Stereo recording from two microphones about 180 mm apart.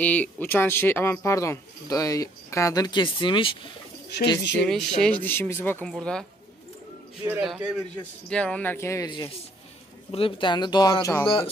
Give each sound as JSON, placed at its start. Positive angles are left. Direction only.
{"t": 0.0, "sound": "speech", "side_deg": 10}
{"t": 4.6, "sound": "speech", "side_deg": 5}
{"t": 7.2, "sound": "a man's voice", "side_deg": -5}